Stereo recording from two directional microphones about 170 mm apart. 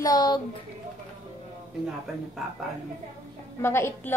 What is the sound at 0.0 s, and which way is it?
Speech, 25° left (ahead or behind).